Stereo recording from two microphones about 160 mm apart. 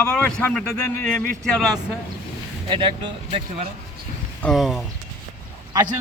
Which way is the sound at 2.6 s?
30° right (ahead or behind).